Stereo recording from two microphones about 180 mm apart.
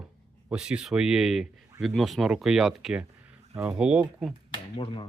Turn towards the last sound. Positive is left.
turn(degrees=30)  # may be behind; listen again after turning